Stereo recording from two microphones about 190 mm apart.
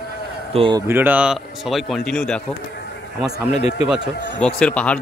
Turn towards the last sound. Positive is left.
turn(degrees=5)  # may be behind; listen again after turning